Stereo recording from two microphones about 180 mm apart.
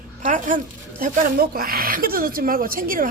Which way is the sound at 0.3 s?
45° right (ahead or behind).